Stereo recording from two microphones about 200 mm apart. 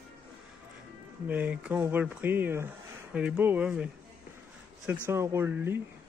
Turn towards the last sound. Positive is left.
turn(degrees=-10)  # may be behind; listen again after turning